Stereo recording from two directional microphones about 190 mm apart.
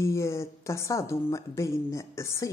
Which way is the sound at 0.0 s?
15° left (ahead or behind).